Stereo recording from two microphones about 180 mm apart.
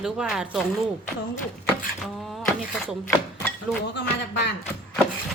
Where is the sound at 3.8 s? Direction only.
70° left (ahead or behind).